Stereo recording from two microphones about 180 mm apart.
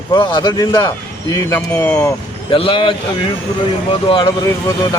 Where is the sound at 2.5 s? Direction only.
30° left (ahead or behind).